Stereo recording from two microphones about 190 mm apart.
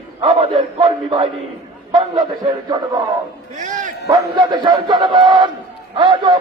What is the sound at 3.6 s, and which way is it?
Bow-wow, 40° right (ahead or behind).